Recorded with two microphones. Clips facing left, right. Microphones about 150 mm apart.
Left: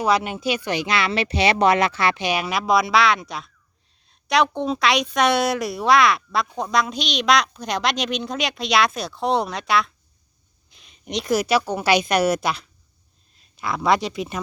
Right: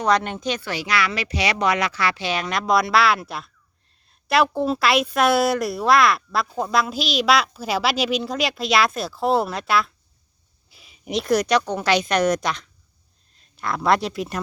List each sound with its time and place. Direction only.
0.0 s speech: 5° left (ahead or behind)
0.7 s a woman's voice: 20° left (ahead or behind); by 14.4 s centre (ahead or behind)